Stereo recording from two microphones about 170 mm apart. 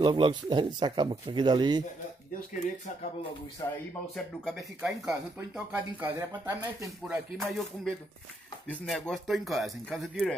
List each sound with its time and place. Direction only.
0.0 s speech: 25° right (ahead or behind)
4.8 s speech: 20° right (ahead or behind)
7.1 s speech: centre (ahead or behind)